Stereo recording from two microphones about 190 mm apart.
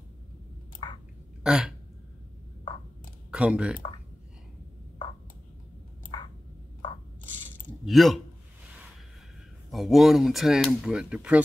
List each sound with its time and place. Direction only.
0.8 s chewing: 25° left (ahead or behind)
1.4 s a sound: 5° right (ahead or behind)
3.3 s speech: 5° right (ahead or behind)
6.1 s a sound: 25° left (ahead or behind)
7.8 s a man's voice: centre (ahead or behind)
9.7 s speech: centre (ahead or behind)